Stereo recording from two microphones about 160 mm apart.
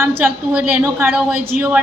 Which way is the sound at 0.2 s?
10° right (ahead or behind).